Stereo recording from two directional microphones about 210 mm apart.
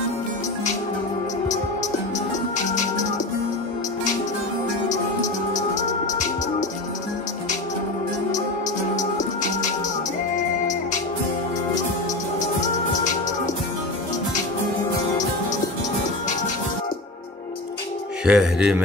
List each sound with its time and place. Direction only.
5.5 s music: 35° left (ahead or behind)
18.2 s speech: 5° right (ahead or behind)